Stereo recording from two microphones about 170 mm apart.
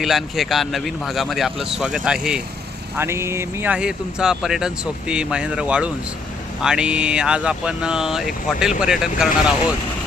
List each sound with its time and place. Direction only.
0.0 s speech: centre (ahead or behind)